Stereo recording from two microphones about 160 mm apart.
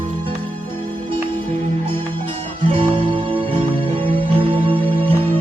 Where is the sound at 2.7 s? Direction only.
35° right (ahead or behind).